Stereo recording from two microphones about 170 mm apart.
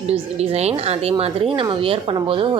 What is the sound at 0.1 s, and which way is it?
A woman's voice, 40° right (ahead or behind).